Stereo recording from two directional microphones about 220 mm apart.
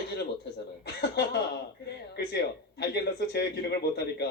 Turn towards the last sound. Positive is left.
turn(degrees=50)  # may be behind; listen again after turning